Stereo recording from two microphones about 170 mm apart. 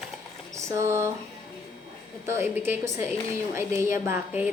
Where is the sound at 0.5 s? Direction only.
15° right (ahead or behind).